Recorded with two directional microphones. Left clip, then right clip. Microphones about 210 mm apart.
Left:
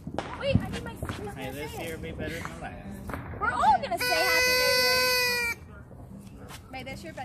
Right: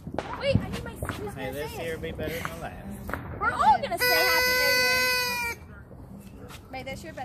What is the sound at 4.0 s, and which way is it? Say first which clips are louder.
Speech: right 3 dB; 15° right (ahead or behind).